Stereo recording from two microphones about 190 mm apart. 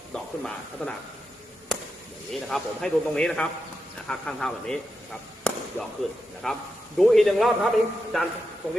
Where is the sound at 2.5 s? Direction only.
5° left (ahead or behind).